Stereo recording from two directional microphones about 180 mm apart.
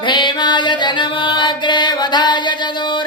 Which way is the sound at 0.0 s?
25° left (ahead or behind).